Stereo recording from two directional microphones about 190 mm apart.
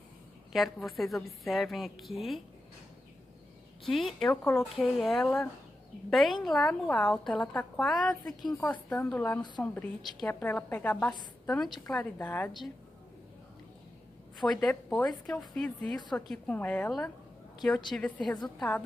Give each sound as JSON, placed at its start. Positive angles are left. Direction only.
{"t": 0.5, "sound": "a woman's voice", "side_deg": 0}
{"t": 3.8, "sound": "a woman's voice", "side_deg": 0}
{"t": 4.7, "sound": "a woman's voice", "side_deg": 0}
{"t": 8.4, "sound": "a woman's voice", "side_deg": 20}
{"t": 8.8, "sound": "a woman's voice", "side_deg": 10}
{"t": 14.5, "sound": "a woman's voice", "side_deg": 0}